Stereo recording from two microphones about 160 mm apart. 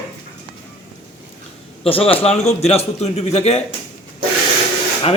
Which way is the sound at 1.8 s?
35° left (ahead or behind).